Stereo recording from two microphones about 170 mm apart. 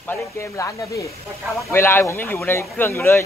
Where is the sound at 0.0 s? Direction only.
15° left (ahead or behind).